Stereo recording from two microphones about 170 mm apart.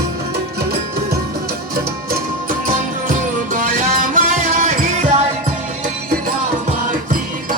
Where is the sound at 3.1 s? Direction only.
55° right (ahead or behind).